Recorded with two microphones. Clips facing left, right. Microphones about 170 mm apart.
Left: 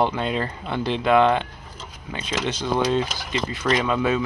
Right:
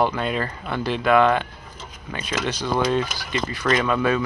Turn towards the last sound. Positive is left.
turn(degrees=20)  # may be behind; listen again after turning